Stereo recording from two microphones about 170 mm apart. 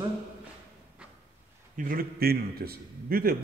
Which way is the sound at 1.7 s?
55° right (ahead or behind).